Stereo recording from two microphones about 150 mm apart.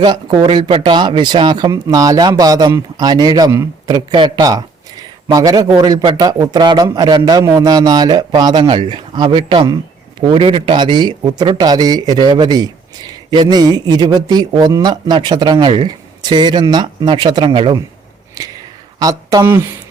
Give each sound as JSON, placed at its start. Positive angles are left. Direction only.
{"t": 0.0, "sound": "speech", "side_deg": -30}